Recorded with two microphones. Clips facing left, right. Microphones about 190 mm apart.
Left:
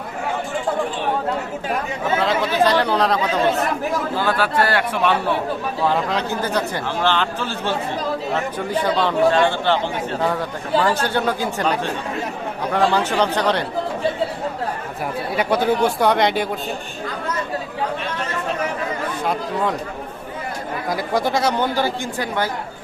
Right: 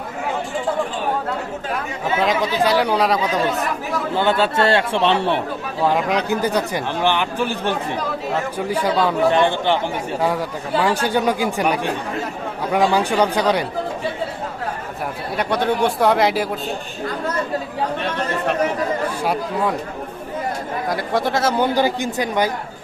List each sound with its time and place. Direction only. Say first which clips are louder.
2.1 s speech: even; 15° right (ahead or behind)
4.1 s a man's voice: right 6 dB; 20° right (ahead or behind)
5.8 s speech: right 3 dB; 15° right (ahead or behind)
15.4 s speech: left 1 dB; 5° left (ahead or behind)
19.2 s speech: left 2 dB; 5° right (ahead or behind)
20.9 s speech: left 1 dB; centre (ahead or behind)
21.8 s speech: right 3 dB; 15° right (ahead or behind)